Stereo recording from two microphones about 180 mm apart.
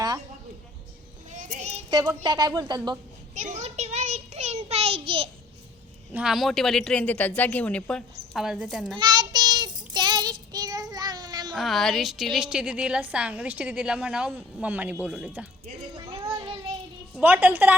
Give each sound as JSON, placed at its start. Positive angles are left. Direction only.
{"t": 1.3, "sound": "child singing", "side_deg": -45}
{"t": 1.9, "sound": "a woman's voice", "side_deg": -20}
{"t": 3.3, "sound": "a sound", "side_deg": -40}
{"t": 6.1, "sound": "a woman's voice", "side_deg": 0}
{"t": 9.0, "sound": "child singing", "side_deg": -25}
{"t": 11.5, "sound": "a woman's voice", "side_deg": 0}
{"t": 16.2, "sound": "child singing", "side_deg": -30}
{"t": 17.2, "sound": "a woman's voice", "side_deg": -10}